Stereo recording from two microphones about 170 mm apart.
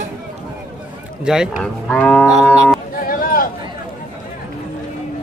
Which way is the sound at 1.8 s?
5° left (ahead or behind).